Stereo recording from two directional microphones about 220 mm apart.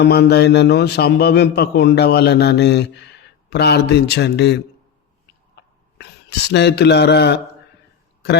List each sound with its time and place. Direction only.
0.0 s a man's voice: 50° left (ahead or behind)
6.0 s speech: 50° left (ahead or behind)